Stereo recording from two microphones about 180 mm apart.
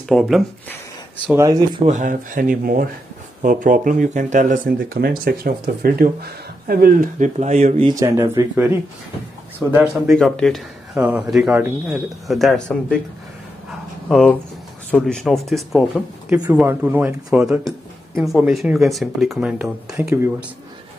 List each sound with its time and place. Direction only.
0.1 s speech: centre (ahead or behind)
1.2 s speech: 15° right (ahead or behind)
1.9 s speech: 45° right (ahead or behind)
7.9 s a man's voice: 20° right (ahead or behind)
10.0 s speech: centre (ahead or behind)
14.0 s speech: centre (ahead or behind)
16.3 s speech: 15° right (ahead or behind)